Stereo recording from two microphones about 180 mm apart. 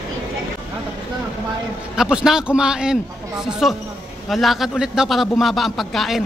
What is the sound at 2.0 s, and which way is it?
A man's voice, 5° right (ahead or behind).